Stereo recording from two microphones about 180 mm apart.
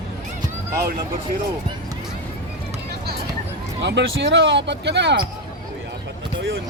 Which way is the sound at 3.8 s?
75° right (ahead or behind).